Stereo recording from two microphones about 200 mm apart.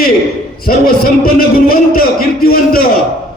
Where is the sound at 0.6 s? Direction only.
45° left (ahead or behind).